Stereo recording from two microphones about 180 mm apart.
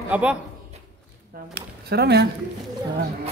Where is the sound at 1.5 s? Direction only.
65° right (ahead or behind).